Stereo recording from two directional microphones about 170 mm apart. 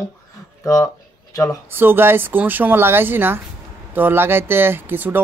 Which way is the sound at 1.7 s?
10° right (ahead or behind).